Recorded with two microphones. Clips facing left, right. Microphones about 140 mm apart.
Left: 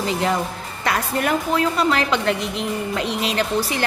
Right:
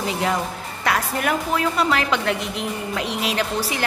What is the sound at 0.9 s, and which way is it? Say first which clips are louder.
A woman's voice: left 1 dB; 5° right (ahead or behind).